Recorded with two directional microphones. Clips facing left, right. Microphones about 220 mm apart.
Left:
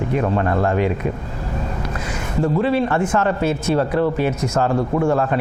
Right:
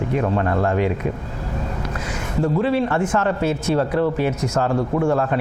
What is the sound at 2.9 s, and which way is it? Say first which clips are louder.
Speech: left 1 dB; 20° left (ahead or behind).